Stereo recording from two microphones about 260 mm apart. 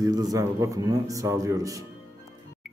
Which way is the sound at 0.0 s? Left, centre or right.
Centre.